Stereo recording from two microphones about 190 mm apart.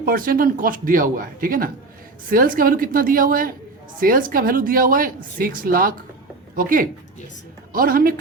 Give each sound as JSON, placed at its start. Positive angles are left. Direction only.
{"t": 0.0, "sound": "a woman's voice", "side_deg": -50}